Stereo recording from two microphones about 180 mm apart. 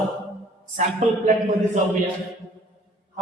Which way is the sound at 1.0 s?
40° right (ahead or behind).